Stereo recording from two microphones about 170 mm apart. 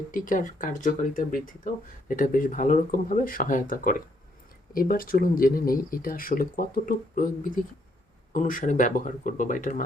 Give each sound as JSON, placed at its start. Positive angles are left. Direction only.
{"t": 0.1, "sound": "speech", "side_deg": 50}